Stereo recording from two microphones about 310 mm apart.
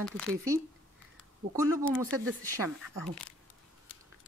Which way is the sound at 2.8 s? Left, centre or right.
Centre.